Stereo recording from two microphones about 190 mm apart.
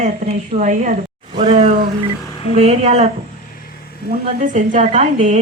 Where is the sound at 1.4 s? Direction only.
30° right (ahead or behind).